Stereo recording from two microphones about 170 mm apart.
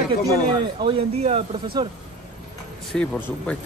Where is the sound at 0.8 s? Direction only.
25° right (ahead or behind).